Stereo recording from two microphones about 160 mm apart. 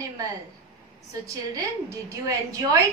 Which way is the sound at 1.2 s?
20° right (ahead or behind).